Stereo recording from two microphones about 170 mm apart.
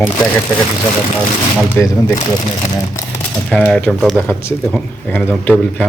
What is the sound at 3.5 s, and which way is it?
A man's voice, 5° left (ahead or behind).